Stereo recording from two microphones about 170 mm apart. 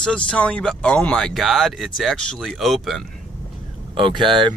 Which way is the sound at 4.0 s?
30° right (ahead or behind).